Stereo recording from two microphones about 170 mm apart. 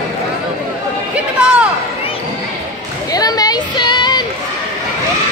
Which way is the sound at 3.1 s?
20° left (ahead or behind).